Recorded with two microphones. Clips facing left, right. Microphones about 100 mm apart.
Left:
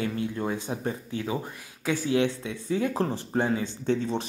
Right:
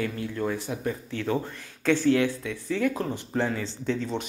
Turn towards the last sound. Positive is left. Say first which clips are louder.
# left 3 dB
turn(degrees=20)  # may be behind; listen again after turning